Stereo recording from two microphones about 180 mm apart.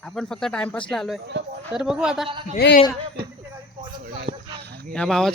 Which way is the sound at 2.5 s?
60° left (ahead or behind).